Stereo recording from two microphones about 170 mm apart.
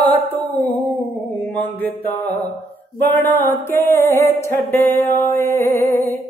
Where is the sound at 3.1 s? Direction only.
15° left (ahead or behind).